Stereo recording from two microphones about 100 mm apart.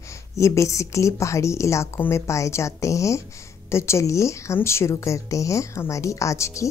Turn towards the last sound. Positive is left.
turn(degrees=30)  # may be behind; listen again after turning